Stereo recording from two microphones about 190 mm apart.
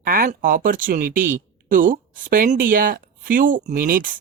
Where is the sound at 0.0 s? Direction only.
50° right (ahead or behind).